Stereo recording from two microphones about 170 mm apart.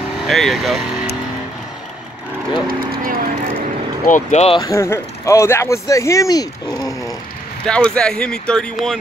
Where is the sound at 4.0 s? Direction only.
45° left (ahead or behind).